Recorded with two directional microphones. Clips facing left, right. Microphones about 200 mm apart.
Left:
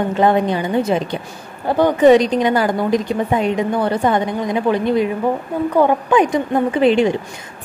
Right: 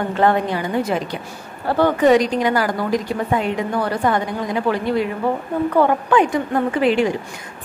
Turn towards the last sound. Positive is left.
turn(degrees=20)  # may be behind; listen again after turning